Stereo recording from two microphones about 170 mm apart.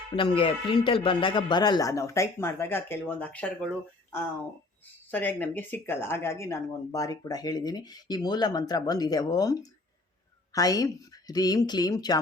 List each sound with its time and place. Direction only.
0.2 s speech: 30° left (ahead or behind); by 3.7 s 5° left (ahead or behind)
5.1 s speech: 10° left (ahead or behind)